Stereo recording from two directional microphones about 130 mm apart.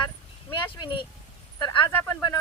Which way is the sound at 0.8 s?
40° left (ahead or behind).